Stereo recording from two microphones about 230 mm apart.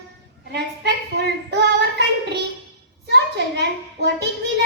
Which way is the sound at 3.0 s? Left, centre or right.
Right.